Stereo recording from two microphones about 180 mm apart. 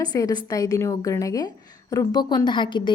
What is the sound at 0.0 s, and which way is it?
A woman's voice, 20° left (ahead or behind).